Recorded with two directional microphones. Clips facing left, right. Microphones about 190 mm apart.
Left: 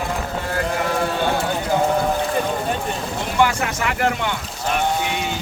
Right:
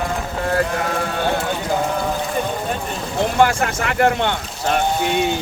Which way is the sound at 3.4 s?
45° right (ahead or behind).